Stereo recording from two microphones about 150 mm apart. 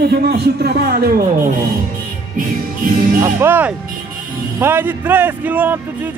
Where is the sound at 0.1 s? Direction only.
90° right.